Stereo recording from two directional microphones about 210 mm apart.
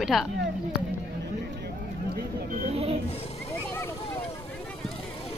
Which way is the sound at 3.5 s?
10° left (ahead or behind).